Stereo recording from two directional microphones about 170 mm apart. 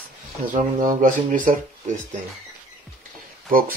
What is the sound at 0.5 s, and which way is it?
Speech, 50° right (ahead or behind).